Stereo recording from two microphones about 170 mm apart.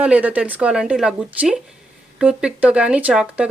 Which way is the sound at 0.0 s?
10° right (ahead or behind).